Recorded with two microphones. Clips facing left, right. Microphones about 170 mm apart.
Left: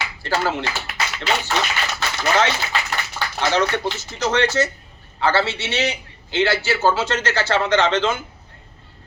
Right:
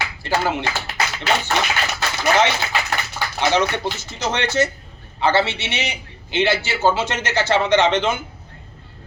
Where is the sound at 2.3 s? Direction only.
15° right (ahead or behind).